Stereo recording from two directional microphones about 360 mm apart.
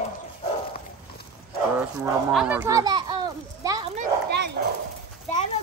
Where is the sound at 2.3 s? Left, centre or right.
Centre.